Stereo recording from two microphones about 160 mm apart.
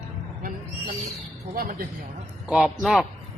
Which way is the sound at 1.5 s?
65° right (ahead or behind).